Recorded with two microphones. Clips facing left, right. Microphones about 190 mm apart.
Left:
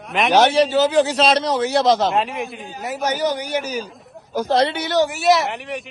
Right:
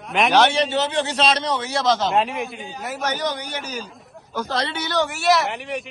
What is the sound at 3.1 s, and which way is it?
Speech, 10° left (ahead or behind).